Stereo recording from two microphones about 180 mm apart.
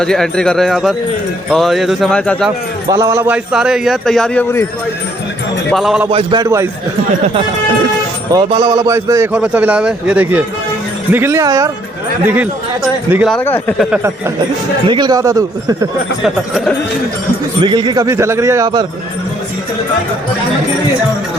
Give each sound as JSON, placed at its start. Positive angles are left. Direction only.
{"t": 0.0, "sound": "a man's voice", "side_deg": 5}
{"t": 2.9, "sound": "a man's voice", "side_deg": -20}
{"t": 5.7, "sound": "a man's voice", "side_deg": 0}
{"t": 6.1, "sound": "speech", "side_deg": -25}
{"t": 8.3, "sound": "a man's voice", "side_deg": -25}
{"t": 13.3, "sound": "speech", "side_deg": 10}
{"t": 14.8, "sound": "speech", "side_deg": -25}
{"t": 16.2, "sound": "a man's voice", "side_deg": 0}
{"t": 17.6, "sound": "speech", "side_deg": -25}